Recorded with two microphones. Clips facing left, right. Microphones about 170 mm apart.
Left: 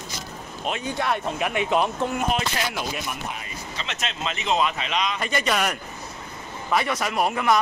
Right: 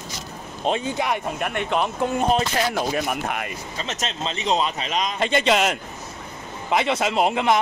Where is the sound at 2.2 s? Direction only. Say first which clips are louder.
Right 8 dB; 35° right (ahead or behind).